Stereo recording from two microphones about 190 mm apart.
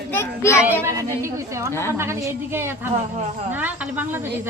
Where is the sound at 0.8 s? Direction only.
15° right (ahead or behind).